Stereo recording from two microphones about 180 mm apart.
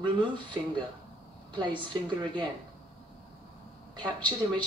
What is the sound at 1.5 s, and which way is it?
Speech, 25° right (ahead or behind).